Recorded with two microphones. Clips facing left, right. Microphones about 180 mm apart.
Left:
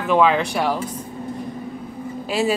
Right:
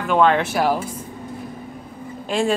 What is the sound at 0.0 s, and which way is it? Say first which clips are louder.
Speech: even; centre (ahead or behind).